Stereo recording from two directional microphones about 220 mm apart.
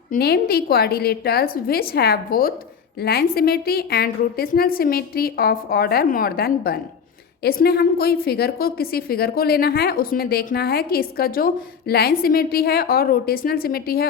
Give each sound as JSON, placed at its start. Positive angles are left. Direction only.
{"t": 0.1, "sound": "a woman's voice", "side_deg": 45}